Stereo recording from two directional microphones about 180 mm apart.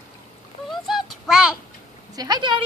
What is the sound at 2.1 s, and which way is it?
Speech, 20° right (ahead or behind).